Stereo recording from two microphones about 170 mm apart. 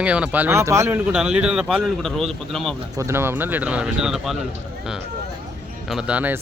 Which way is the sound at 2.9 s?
15° right (ahead or behind).